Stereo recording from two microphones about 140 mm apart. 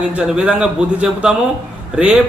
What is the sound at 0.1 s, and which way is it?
Speech, 10° right (ahead or behind).